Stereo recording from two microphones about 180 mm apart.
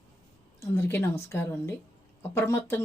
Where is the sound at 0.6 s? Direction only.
15° left (ahead or behind).